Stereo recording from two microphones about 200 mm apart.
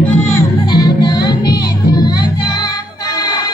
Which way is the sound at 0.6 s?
20° left (ahead or behind).